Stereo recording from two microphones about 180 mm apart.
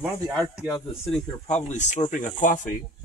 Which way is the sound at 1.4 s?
40° left (ahead or behind).